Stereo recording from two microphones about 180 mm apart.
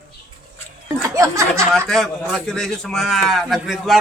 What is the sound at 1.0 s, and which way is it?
Speech, 15° right (ahead or behind).